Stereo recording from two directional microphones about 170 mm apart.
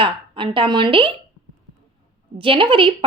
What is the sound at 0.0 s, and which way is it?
A woman's voice, 30° right (ahead or behind).